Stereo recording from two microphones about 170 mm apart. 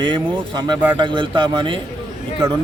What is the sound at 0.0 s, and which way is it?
A man's voice, 25° right (ahead or behind).